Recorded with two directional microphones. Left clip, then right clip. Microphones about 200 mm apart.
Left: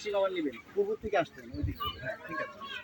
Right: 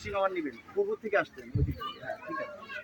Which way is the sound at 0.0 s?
30° right (ahead or behind).